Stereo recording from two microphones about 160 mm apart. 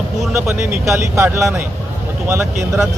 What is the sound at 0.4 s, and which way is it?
Speech, 15° right (ahead or behind).